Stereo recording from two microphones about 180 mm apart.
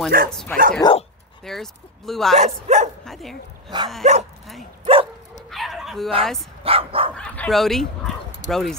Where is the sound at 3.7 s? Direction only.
25° right (ahead or behind).